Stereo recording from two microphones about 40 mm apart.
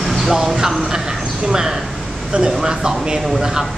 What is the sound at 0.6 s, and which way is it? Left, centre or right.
Speech, centre.